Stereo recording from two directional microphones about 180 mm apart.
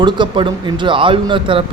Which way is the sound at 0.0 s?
25° right (ahead or behind).